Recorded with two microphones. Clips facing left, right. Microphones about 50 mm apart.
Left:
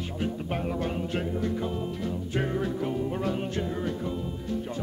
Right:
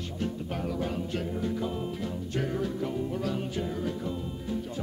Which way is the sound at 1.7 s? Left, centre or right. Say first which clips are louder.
Left 1 dB; centre.